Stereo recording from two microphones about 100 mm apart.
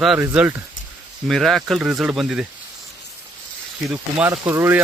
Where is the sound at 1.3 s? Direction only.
Centre (ahead or behind).